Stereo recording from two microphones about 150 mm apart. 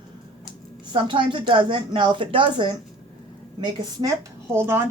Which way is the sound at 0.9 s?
30° right (ahead or behind).